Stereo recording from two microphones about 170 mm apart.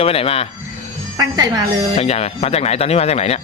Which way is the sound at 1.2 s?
20° right (ahead or behind).